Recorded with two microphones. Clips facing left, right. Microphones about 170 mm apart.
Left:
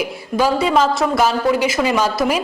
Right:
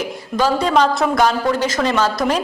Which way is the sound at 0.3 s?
10° left (ahead or behind).